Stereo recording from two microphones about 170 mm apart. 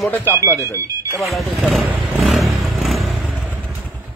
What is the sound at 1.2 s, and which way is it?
Speech, centre (ahead or behind).